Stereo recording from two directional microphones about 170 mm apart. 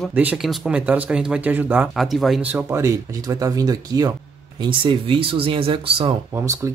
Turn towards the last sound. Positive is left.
turn(degrees=-30)  # may be behind; listen again after turning